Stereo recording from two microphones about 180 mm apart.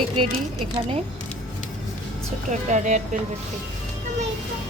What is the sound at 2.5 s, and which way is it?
Speech, 40° right (ahead or behind).